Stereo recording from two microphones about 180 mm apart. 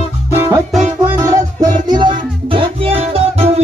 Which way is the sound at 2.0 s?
25° right (ahead or behind).